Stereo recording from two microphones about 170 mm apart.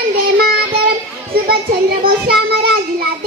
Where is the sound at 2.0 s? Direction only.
65° right (ahead or behind).